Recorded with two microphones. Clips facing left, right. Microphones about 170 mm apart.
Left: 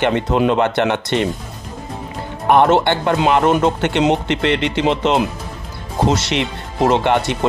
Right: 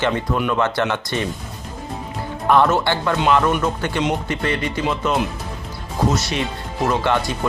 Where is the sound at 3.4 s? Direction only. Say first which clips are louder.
Left 4 dB; 25° left (ahead or behind).